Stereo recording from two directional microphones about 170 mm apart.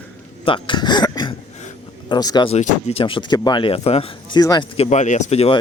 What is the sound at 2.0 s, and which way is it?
Speech, 25° left (ahead or behind).